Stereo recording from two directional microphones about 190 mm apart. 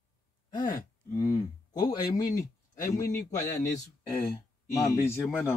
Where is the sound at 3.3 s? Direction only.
20° left (ahead or behind).